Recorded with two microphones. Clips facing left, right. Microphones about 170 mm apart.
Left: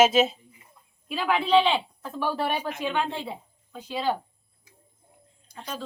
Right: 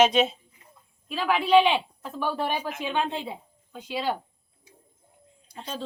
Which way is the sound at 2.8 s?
20° right (ahead or behind).